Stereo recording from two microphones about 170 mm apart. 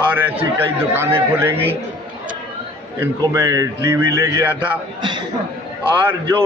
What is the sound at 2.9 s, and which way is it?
A man's voice, 20° right (ahead or behind).